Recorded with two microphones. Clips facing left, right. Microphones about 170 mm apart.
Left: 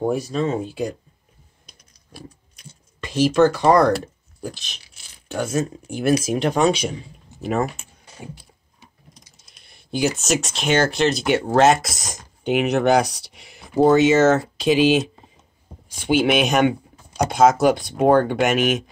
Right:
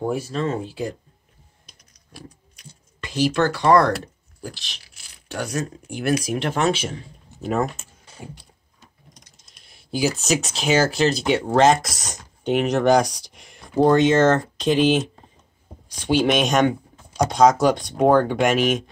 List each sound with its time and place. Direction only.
0.0 s speech: 20° left (ahead or behind)
3.1 s speech: 20° left (ahead or behind)
7.4 s speech: 5° left (ahead or behind)
9.1 s typing: centre (ahead or behind)
10.2 s speech: centre (ahead or behind)